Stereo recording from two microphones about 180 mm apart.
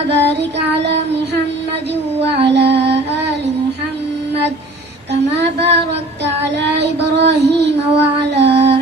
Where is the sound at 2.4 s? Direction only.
70° right (ahead or behind).